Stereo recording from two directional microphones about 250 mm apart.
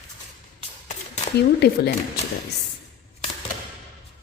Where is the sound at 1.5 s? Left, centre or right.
Left.